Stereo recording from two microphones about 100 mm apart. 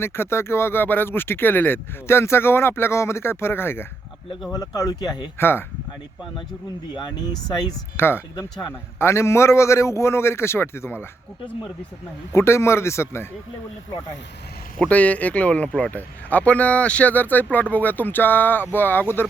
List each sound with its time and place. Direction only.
0.0 s speech: 25° left (ahead or behind)
4.5 s speech: 35° left (ahead or behind)
5.4 s speech: 25° left (ahead or behind)
6.9 s speech: 45° left (ahead or behind)
7.9 s speech: 20° left (ahead or behind)
12.3 s speech: 30° left (ahead or behind)
14.8 s speech: 15° left (ahead or behind)